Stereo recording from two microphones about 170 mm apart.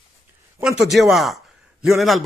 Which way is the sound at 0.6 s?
5° right (ahead or behind).